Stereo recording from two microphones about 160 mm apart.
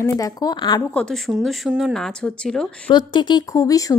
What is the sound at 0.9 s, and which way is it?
Speech, centre (ahead or behind).